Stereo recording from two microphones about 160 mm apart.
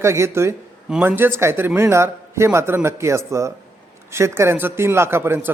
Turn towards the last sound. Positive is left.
turn(degrees=-15)  # may be behind; listen again after turning